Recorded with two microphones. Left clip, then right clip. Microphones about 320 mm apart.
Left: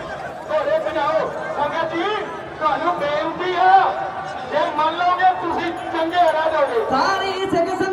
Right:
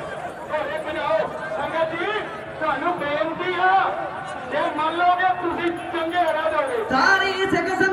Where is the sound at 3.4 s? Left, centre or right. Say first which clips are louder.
Left 6 dB; left.